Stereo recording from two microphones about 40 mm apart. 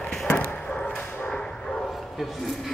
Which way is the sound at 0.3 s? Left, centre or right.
Left.